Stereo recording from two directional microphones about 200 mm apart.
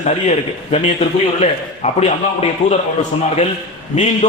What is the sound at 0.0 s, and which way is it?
A man's voice, 35° left (ahead or behind).